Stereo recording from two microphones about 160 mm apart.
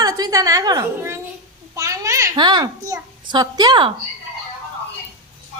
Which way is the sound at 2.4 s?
30° right (ahead or behind).